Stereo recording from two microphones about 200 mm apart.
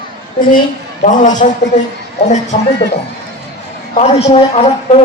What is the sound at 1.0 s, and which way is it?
Speech, 40° left (ahead or behind).